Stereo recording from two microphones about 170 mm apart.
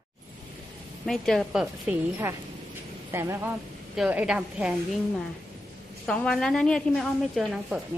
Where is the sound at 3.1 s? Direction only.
15° right (ahead or behind).